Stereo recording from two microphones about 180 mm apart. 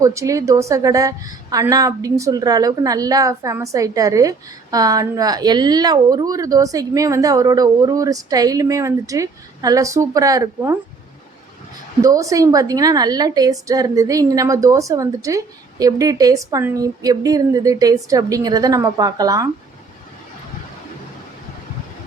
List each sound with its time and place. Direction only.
0.0 s a woman's voice: 15° right (ahead or behind)
12.0 s a woman's voice: 20° right (ahead or behind)